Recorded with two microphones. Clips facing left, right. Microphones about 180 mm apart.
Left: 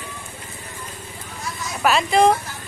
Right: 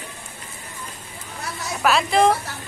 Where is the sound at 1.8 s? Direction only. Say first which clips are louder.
Left 1 dB; centre (ahead or behind).